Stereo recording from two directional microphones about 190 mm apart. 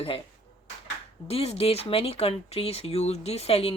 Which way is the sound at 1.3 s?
30° left (ahead or behind).